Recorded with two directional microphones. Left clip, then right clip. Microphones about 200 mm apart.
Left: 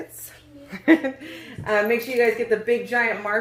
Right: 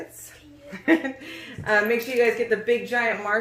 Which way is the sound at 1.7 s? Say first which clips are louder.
Even; 10° left (ahead or behind).